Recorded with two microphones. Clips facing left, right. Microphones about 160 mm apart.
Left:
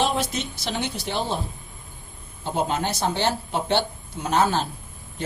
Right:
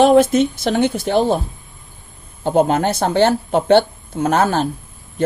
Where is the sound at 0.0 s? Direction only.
55° right (ahead or behind).